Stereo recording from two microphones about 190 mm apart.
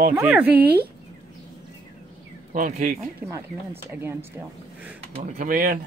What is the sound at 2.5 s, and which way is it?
Speech, 40° right (ahead or behind).